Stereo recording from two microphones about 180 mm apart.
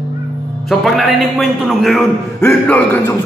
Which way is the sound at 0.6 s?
Centre (ahead or behind).